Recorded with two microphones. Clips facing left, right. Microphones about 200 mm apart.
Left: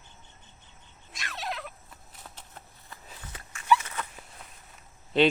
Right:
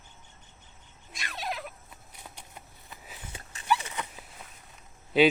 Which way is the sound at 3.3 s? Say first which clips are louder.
Right 1 dB; 25° right (ahead or behind).